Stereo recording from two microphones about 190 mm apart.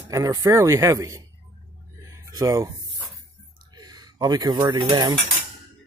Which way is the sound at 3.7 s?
20° right (ahead or behind).